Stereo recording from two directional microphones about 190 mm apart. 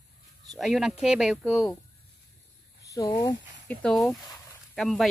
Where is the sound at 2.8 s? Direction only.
20° left (ahead or behind).